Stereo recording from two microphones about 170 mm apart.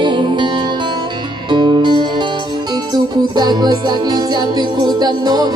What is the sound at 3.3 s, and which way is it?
Music, 25° right (ahead or behind).